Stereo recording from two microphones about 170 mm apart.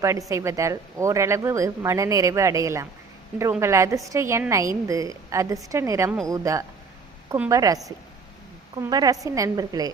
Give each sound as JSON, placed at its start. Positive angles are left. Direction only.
{"t": 0.0, "sound": "a woman's voice", "side_deg": -20}
{"t": 8.8, "sound": "a woman's voice", "side_deg": -20}